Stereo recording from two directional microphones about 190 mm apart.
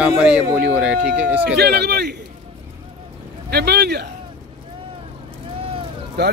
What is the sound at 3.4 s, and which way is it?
Speech, 60° right (ahead or behind).